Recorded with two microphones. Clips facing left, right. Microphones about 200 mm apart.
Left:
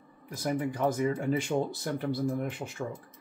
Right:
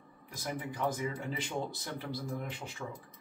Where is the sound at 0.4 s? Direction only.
45° left (ahead or behind).